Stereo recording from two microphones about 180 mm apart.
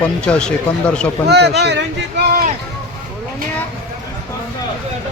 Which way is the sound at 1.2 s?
65° right (ahead or behind).